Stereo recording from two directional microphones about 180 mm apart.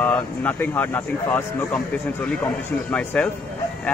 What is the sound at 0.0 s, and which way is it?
Speech, 10° left (ahead or behind).